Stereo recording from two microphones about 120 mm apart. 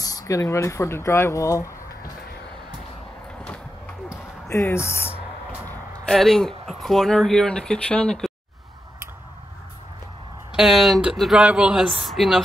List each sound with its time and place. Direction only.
0.0 s speech: 30° left (ahead or behind)
3.4 s a sound: 10° left (ahead or behind)
4.5 s speech: 20° left (ahead or behind)
6.0 s speech: 5° left (ahead or behind)
10.5 s speech: centre (ahead or behind)